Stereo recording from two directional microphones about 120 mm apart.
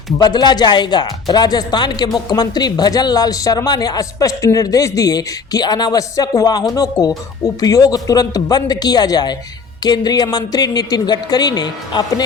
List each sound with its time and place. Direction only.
0.2 s speech: 35° left (ahead or behind)